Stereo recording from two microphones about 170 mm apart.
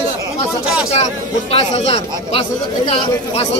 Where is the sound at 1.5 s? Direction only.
35° left (ahead or behind).